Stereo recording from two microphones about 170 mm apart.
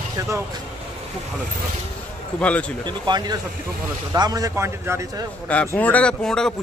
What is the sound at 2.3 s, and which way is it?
Speech, 5° left (ahead or behind).